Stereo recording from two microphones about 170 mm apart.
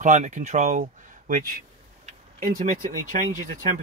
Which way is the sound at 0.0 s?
45° right (ahead or behind).